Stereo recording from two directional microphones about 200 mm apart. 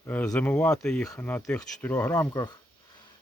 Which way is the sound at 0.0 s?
10° left (ahead or behind).